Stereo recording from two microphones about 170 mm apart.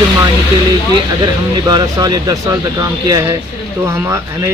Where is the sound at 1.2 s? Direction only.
25° right (ahead or behind).